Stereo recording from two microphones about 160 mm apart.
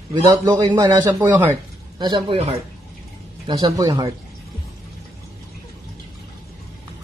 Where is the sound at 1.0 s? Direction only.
10° right (ahead or behind).